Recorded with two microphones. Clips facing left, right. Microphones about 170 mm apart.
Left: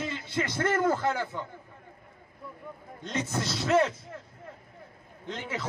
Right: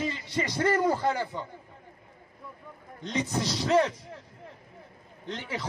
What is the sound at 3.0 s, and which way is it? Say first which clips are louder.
Speech: right 2 dB; 15° right (ahead or behind).